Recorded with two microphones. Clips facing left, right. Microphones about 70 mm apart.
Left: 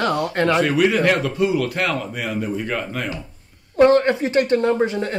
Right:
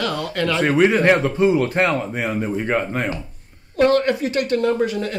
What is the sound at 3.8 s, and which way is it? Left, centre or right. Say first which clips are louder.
Speech: left 2 dB; left.